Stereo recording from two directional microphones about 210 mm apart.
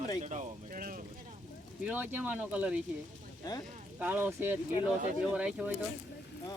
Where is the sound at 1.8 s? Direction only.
10° right (ahead or behind).